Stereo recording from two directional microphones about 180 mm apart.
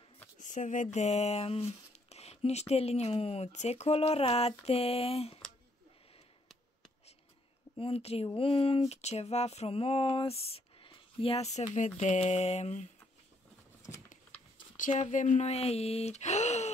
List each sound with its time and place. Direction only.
0.4 s speech: 45° left (ahead or behind)
7.7 s speech: 30° left (ahead or behind)
14.8 s speech: 45° left (ahead or behind)